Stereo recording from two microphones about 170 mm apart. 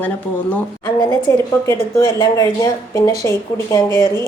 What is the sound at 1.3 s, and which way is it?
Speech, 15° left (ahead or behind).